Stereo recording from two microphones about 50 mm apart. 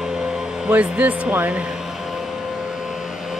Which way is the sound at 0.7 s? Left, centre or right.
Right.